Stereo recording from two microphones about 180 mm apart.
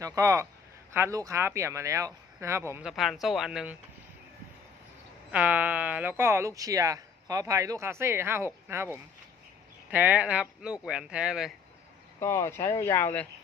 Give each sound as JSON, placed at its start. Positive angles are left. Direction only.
{"t": 0.0, "sound": "speech", "side_deg": -20}
{"t": 2.9, "sound": "speech", "side_deg": 0}
{"t": 5.3, "sound": "speech", "side_deg": -10}
{"t": 12.2, "sound": "speech", "side_deg": 15}